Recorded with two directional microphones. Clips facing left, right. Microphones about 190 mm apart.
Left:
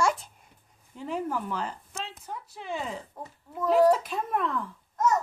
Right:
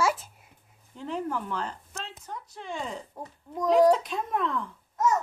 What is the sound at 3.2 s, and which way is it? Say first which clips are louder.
Speech: right 1 dB; 10° right (ahead or behind).